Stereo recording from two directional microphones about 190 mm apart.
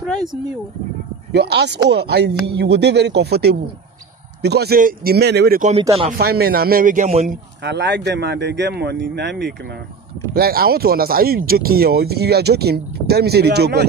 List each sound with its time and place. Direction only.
1.3 s speech: 60° right (ahead or behind)
5.6 s speech: 35° right (ahead or behind)
6.1 s speech: 55° right (ahead or behind); by 7.3 s 40° right (ahead or behind)
7.6 s speech: 65° right (ahead or behind)